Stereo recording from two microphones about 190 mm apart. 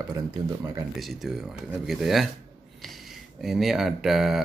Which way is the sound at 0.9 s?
Centre (ahead or behind).